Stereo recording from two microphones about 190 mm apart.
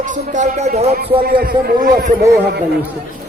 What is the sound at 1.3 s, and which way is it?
Speech, 50° right (ahead or behind).